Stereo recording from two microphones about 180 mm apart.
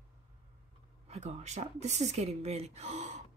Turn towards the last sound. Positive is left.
turn(degrees=-40)  # may be behind; listen again after turning